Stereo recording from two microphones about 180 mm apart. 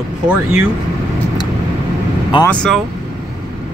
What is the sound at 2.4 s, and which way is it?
Speech, 5° left (ahead or behind).